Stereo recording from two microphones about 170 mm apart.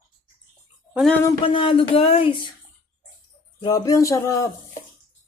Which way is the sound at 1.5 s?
30° left (ahead or behind).